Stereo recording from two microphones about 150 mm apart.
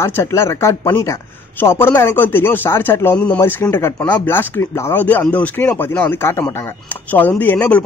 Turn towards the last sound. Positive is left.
turn(degrees=10)  # may be behind; listen again after turning